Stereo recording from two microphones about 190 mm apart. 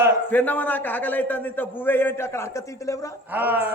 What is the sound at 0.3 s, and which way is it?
A man's voice, 10° left (ahead or behind).